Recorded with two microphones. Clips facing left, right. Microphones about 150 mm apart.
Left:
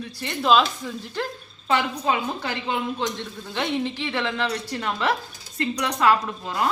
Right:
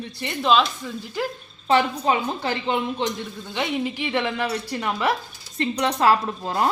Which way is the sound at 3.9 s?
15° right (ahead or behind).